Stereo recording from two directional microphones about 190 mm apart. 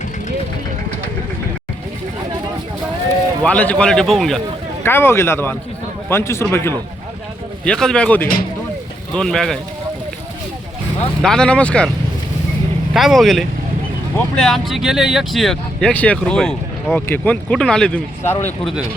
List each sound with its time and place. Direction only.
3.4 s speech: 5° left (ahead or behind)
4.8 s speech: 10° left (ahead or behind)
11.2 s speech: 5° left (ahead or behind)
12.9 s speech: centre (ahead or behind)